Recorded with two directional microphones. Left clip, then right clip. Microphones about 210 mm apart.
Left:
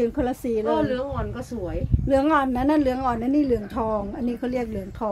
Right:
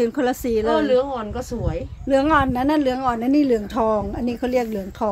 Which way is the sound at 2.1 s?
5° right (ahead or behind).